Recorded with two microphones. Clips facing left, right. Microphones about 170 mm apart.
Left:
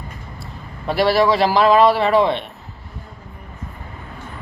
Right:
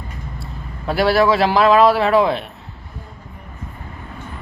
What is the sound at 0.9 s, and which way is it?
A man's voice, centre (ahead or behind).